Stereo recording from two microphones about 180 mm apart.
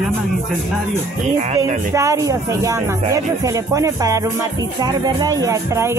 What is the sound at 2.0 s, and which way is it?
Music, 15° right (ahead or behind).